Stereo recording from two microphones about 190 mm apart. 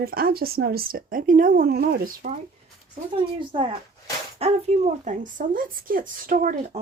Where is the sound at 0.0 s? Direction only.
50° right (ahead or behind).